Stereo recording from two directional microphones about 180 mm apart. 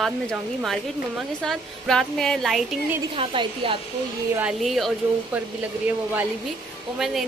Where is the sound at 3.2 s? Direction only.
30° right (ahead or behind).